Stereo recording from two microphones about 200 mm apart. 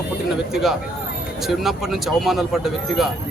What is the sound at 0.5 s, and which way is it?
Speech, centre (ahead or behind).